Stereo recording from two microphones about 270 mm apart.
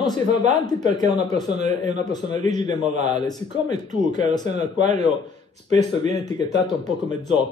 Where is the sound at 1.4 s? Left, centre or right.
Right.